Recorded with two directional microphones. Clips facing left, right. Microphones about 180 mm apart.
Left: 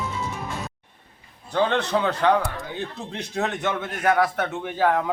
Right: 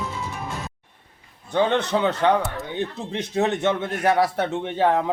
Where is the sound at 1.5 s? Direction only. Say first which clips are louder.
Right 1 dB; 20° right (ahead or behind).